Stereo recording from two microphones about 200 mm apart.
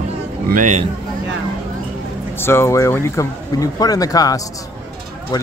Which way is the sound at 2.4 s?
10° left (ahead or behind).